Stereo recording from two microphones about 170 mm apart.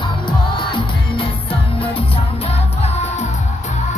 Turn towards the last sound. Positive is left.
turn(degrees=35)  # may be behind; listen again after turning